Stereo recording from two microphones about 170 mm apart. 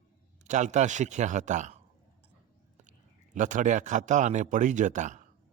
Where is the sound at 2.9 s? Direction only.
50° right (ahead or behind).